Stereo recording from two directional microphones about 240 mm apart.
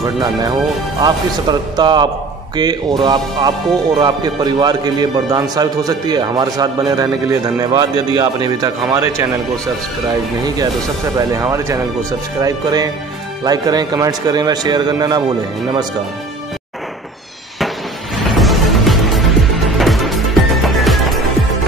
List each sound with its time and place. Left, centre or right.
0.0 s a man's voice: centre
11.1 s a man's voice: centre
18.3 s music: centre